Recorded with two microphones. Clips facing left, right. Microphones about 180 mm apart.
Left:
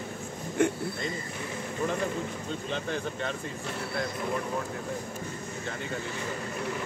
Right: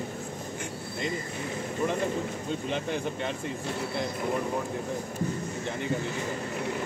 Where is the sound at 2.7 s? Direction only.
15° right (ahead or behind).